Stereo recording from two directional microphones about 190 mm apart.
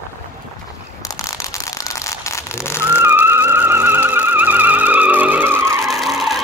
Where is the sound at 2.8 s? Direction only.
10° right (ahead or behind).